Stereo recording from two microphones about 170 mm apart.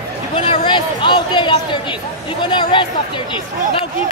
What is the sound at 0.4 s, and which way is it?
A man's voice, 30° left (ahead or behind).